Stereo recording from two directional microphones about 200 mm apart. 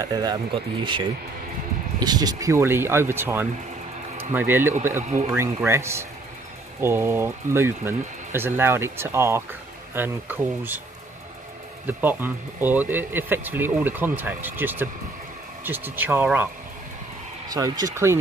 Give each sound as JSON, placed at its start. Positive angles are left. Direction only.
{"t": 0.0, "sound": "speech", "side_deg": -20}
{"t": 11.8, "sound": "speech", "side_deg": -10}
{"t": 17.5, "sound": "speech", "side_deg": -15}